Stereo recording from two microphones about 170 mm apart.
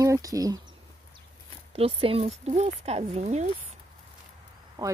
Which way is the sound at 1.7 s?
35° right (ahead or behind).